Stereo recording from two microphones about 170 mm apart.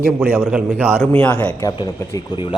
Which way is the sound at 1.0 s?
10° left (ahead or behind).